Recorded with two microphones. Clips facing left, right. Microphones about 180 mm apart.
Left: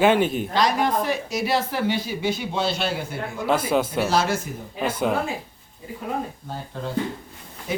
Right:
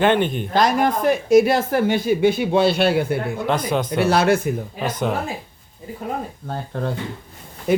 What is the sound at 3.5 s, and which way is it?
Speech, 5° left (ahead or behind).